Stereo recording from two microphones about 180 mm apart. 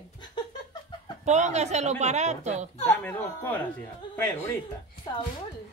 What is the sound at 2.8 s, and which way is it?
Speech, 10° left (ahead or behind).